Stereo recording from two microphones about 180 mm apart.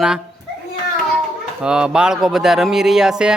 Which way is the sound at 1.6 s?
5° right (ahead or behind).